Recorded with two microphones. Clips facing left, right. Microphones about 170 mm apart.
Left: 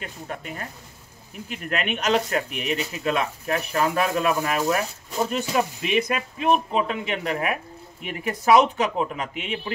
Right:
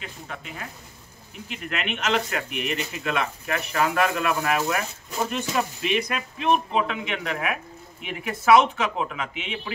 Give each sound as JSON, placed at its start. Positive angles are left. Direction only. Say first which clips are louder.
{"t": 0.0, "sound": "speech", "louder": "left 4 dB", "side_deg": 50}
{"t": 2.5, "sound": "speech", "louder": "left 1 dB", "side_deg": 0}
{"t": 3.0, "sound": "speech", "louder": "left 2 dB", "side_deg": 40}